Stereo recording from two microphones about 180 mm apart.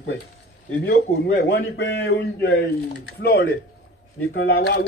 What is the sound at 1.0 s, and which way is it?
A man's voice, 50° left (ahead or behind).